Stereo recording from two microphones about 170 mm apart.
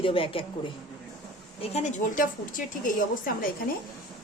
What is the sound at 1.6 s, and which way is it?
Speech, 40° left (ahead or behind).